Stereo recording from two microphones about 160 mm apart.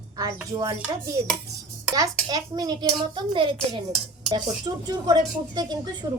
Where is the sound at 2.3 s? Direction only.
25° right (ahead or behind).